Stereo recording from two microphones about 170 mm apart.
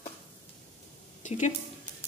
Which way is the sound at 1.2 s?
45° left (ahead or behind).